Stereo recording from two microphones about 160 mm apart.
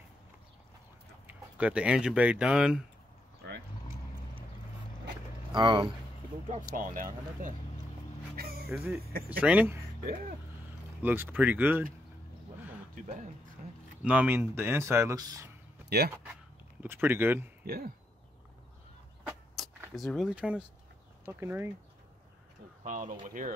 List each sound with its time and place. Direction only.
1.2 s speech: 5° right (ahead or behind)
5.5 s speech: 30° right (ahead or behind)
6.7 s speech: 60° right (ahead or behind)
8.4 s music: 70° right (ahead or behind)
8.6 s speech: 5° right (ahead or behind)
11.0 s speech: 10° right (ahead or behind)
13.6 s a sound: 55° right (ahead or behind)
14.0 s speech: 10° right (ahead or behind)
16.8 s speech: 15° right (ahead or behind)
17.6 s speech: 70° right (ahead or behind)
19.6 s a sound: centre (ahead or behind)
20.0 s speech: centre (ahead or behind)
22.8 s speech: 55° right (ahead or behind)